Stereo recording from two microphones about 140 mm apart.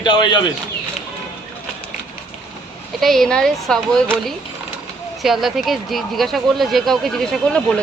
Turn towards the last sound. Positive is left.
turn(degrees=5)  # may be behind; listen again after turning